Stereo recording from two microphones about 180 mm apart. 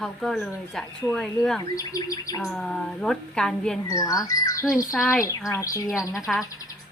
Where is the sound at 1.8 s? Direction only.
20° left (ahead or behind).